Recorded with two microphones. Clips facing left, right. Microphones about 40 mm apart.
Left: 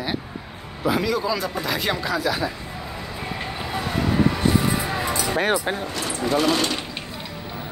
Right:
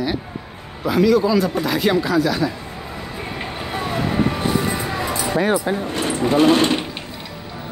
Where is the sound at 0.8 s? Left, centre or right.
Centre.